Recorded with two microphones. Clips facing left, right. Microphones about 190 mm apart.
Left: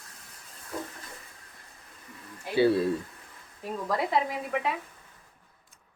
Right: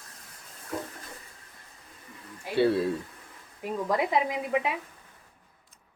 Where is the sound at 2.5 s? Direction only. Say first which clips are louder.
Left 1 dB; centre (ahead or behind).